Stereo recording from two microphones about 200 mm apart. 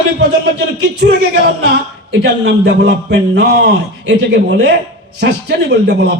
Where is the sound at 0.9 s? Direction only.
55° right (ahead or behind).